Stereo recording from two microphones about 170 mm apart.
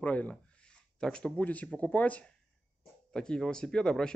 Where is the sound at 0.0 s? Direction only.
10° left (ahead or behind).